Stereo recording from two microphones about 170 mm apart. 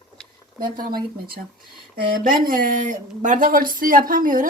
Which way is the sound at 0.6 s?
60° right (ahead or behind).